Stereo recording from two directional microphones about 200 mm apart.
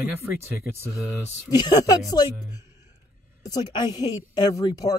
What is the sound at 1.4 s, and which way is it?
A woman's voice, 20° left (ahead or behind).